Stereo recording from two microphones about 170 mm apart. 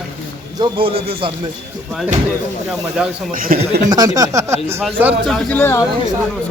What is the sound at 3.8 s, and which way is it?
Speech, 20° right (ahead or behind).